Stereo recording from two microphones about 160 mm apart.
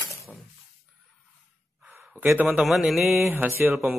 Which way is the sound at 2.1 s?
5° right (ahead or behind).